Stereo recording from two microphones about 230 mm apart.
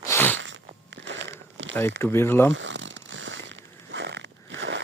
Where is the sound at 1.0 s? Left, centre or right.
Right.